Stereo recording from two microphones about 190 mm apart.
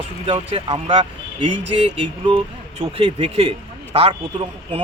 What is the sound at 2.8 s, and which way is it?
Speech, 30° right (ahead or behind).